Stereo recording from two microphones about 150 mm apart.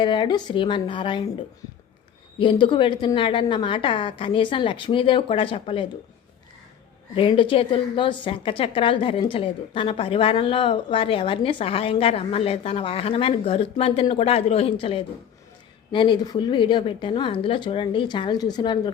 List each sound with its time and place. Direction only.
0.0 s a woman's voice: 30° left (ahead or behind)
2.4 s a woman's voice: 35° left (ahead or behind)
7.2 s a woman's voice: 35° left (ahead or behind)